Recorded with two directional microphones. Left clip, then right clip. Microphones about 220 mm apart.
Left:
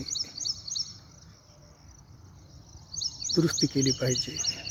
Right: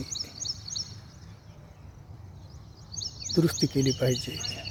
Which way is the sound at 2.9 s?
45° left (ahead or behind).